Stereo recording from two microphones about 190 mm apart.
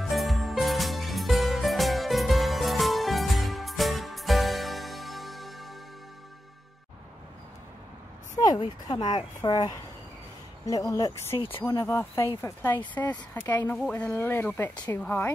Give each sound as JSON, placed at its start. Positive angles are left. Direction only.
{"t": 0.0, "sound": "music", "side_deg": 0}
{"t": 8.4, "sound": "speech", "side_deg": 20}